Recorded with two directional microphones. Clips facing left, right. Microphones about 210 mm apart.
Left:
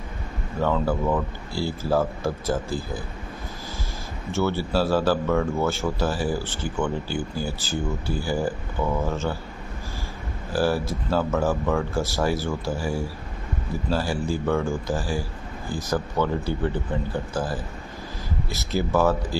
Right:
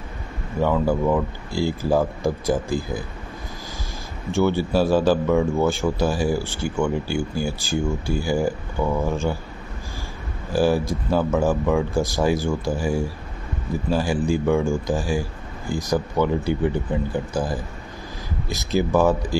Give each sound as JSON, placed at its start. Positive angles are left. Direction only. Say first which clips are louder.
{"t": 0.6, "sound": "a man's voice", "louder": "right 3 dB", "side_deg": -10}
{"t": 4.3, "sound": "a man's voice", "louder": "right 4 dB", "side_deg": -15}
{"t": 10.5, "sound": "a man's voice", "louder": "right 4 dB", "side_deg": -15}